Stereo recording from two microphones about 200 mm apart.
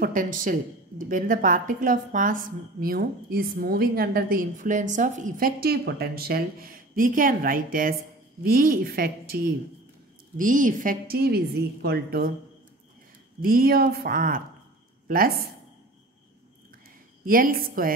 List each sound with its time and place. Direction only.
0.0 s a woman's voice: 40° right (ahead or behind)
13.4 s a woman's voice: 45° right (ahead or behind)
17.3 s a woman's voice: 45° right (ahead or behind)